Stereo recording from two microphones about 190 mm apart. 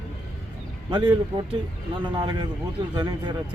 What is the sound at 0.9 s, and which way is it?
Speech, 25° right (ahead or behind).